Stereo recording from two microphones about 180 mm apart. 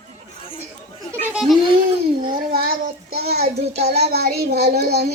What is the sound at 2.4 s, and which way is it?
Speech, 55° right (ahead or behind).